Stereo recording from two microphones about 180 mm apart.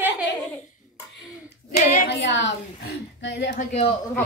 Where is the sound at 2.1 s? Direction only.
85° left; by 3.6 s 65° left (ahead or behind).